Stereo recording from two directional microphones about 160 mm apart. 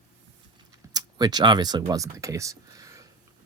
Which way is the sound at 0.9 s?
25° right (ahead or behind).